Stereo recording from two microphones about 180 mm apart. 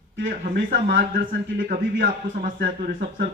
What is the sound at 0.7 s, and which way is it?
Speech, 90° right.